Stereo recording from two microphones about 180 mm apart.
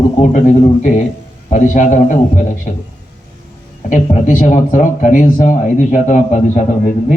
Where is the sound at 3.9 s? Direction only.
40° left (ahead or behind).